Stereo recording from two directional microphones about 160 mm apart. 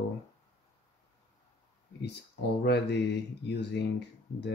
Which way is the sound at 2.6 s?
90° left.